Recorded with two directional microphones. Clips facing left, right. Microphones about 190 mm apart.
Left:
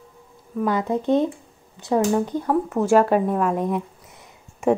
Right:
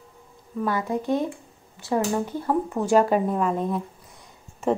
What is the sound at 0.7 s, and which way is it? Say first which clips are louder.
A woman's voice: left 4 dB; 20° left (ahead or behind).